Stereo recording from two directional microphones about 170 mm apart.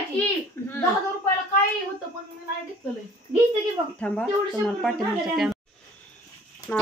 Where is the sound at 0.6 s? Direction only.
15° left (ahead or behind).